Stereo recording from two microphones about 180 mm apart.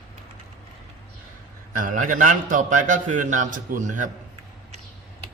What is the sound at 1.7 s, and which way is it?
A man's voice, 45° right (ahead or behind).